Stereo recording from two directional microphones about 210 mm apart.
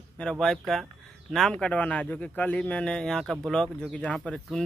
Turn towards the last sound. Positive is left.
turn(degrees=5)  # may be behind; listen again after turning